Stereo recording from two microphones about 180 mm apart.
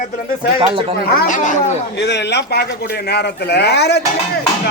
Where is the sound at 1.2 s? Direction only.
45° left (ahead or behind).